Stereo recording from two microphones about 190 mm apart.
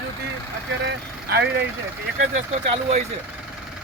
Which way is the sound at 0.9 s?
60° right (ahead or behind).